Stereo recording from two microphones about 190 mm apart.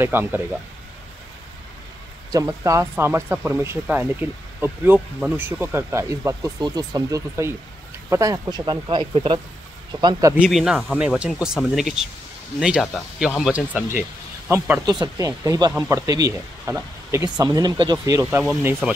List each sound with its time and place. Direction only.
0.0 s speech: 10° right (ahead or behind)
2.3 s speech: 15° right (ahead or behind)
10.4 s speech: 5° right (ahead or behind)
14.5 s speech: 15° right (ahead or behind)